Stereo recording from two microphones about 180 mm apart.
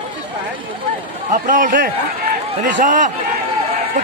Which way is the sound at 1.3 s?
45° right (ahead or behind).